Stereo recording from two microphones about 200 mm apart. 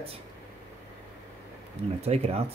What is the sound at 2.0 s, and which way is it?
Speech, 30° right (ahead or behind).